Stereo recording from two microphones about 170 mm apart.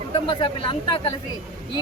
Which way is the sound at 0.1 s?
30° left (ahead or behind).